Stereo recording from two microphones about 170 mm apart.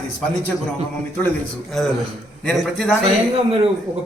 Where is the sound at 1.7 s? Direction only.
Centre (ahead or behind).